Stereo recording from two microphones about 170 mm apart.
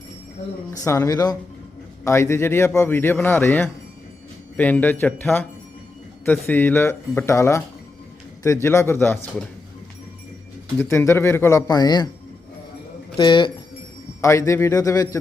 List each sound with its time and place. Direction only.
0.9 s a man's voice: 20° left (ahead or behind)
10.8 s a man's voice: 15° left (ahead or behind)
13.1 s speech: 30° left (ahead or behind)
14.2 s a man's voice: 15° left (ahead or behind)